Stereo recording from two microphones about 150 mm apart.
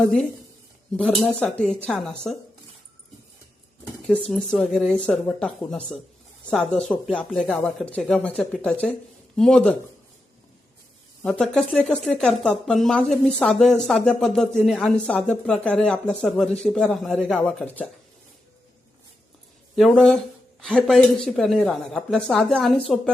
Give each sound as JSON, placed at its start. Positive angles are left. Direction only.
{"t": 0.0, "sound": "speech", "side_deg": 5}
{"t": 4.0, "sound": "speech", "side_deg": 5}
{"t": 11.2, "sound": "speech", "side_deg": 5}
{"t": 19.7, "sound": "speech", "side_deg": 5}